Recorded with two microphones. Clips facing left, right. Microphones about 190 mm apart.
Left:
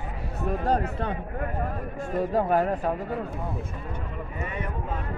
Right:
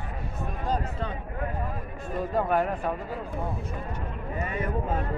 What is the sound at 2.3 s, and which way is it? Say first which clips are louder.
Speech: left 1 dB; 40° left (ahead or behind).